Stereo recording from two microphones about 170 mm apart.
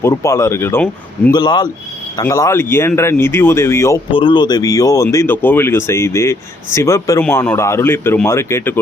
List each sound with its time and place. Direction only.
0.0 s speech: 15° left (ahead or behind)
1.3 s speech: 25° left (ahead or behind)
4.1 s speech: 30° left (ahead or behind); by 8.8 s 15° left (ahead or behind)